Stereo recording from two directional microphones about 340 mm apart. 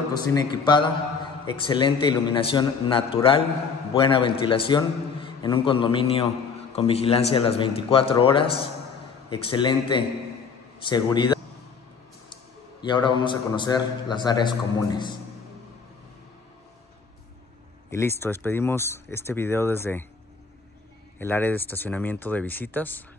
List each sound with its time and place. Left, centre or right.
0.1 s a man's voice: centre
12.8 s a man's voice: centre
17.8 s a man's voice: centre
21.2 s speech: centre